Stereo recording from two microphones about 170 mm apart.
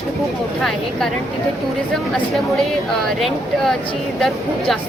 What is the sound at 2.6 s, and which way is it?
Speech, centre (ahead or behind).